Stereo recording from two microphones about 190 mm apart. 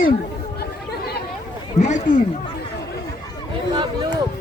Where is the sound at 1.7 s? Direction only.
40° left (ahead or behind).